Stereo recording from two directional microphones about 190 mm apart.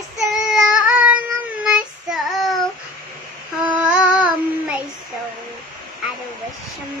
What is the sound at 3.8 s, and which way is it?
Child singing, 5° right (ahead or behind).